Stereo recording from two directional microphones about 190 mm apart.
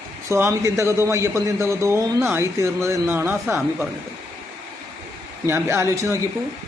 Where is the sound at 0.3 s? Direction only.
15° right (ahead or behind).